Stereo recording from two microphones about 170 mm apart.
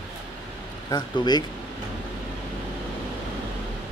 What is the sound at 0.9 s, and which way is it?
Speech, 25° left (ahead or behind).